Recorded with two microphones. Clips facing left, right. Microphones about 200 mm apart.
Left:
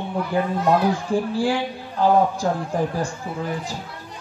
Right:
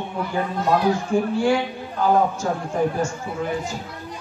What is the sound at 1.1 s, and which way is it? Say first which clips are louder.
Speech: right 2 dB; 35° left (ahead or behind).